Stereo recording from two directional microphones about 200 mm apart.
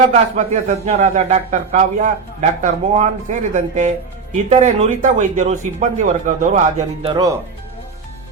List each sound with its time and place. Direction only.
0.3 s a man's voice: 40° right (ahead or behind)
7.1 s speech: 20° right (ahead or behind)